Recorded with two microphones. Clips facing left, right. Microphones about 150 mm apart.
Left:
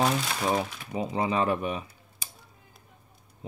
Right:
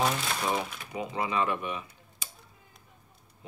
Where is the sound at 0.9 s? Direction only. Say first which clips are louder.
Left 3 dB; 30° left (ahead or behind).